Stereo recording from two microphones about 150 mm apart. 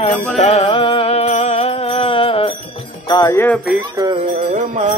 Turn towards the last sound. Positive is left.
turn(degrees=-60)  # may be behind; listen again after turning